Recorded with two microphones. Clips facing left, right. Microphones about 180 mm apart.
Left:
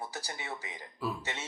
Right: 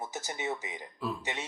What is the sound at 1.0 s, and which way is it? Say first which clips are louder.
Speech: even; 5° left (ahead or behind).